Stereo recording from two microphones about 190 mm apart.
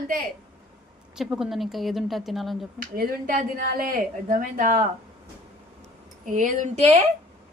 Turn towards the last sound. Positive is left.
turn(degrees=-35)  # may be behind; listen again after turning